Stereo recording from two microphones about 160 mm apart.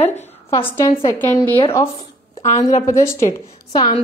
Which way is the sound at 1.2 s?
15° left (ahead or behind).